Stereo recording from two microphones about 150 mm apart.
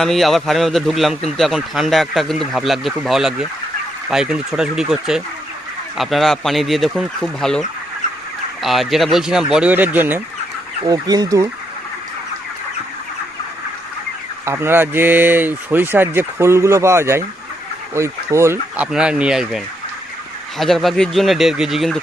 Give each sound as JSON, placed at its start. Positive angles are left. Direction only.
{"t": 0.0, "sound": "a man's voice", "side_deg": 0}
{"t": 8.6, "sound": "a man's voice", "side_deg": 0}
{"t": 10.8, "sound": "speech", "side_deg": -25}
{"t": 14.4, "sound": "speech", "side_deg": -15}
{"t": 18.9, "sound": "a man's voice", "side_deg": -5}